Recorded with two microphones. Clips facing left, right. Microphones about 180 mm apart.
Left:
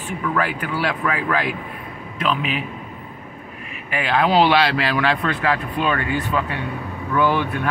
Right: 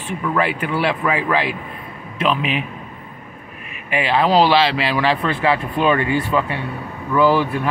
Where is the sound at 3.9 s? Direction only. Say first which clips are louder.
Right 2 dB; 10° right (ahead or behind).